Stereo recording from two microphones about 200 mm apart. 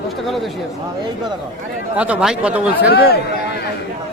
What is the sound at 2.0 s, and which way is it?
Speech, 5° right (ahead or behind).